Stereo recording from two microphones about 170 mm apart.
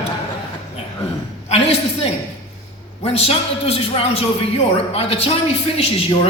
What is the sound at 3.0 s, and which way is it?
A man's voice, 35° left (ahead or behind).